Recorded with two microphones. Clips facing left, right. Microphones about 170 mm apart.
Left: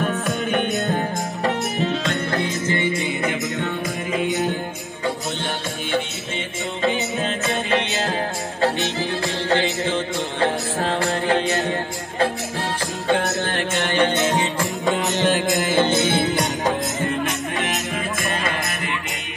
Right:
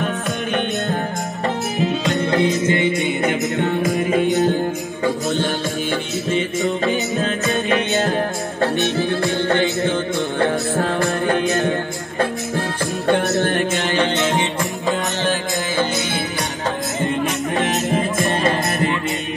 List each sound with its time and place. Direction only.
0.0 s music: 5° left (ahead or behind)
1.8 s music: 15° right (ahead or behind)
13.6 s music: 55° left (ahead or behind)
14.9 s music: 20° left (ahead or behind)
17.9 s music: 30° right (ahead or behind)